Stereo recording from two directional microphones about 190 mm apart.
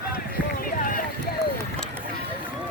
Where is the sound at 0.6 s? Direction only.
45° left (ahead or behind).